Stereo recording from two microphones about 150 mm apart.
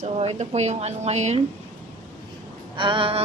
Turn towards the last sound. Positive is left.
turn(degrees=-35)  # may be behind; listen again after turning